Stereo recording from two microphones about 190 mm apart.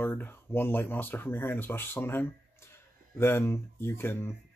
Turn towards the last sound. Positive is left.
turn(degrees=10)  # may be behind; listen again after turning